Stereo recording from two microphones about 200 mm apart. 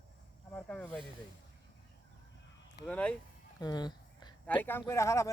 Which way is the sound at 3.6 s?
20° left (ahead or behind).